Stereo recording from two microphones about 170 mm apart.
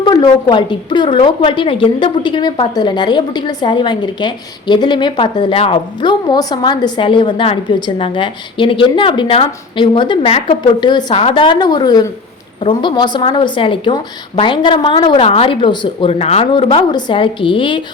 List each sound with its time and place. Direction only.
0.0 s a woman's voice: 25° left (ahead or behind)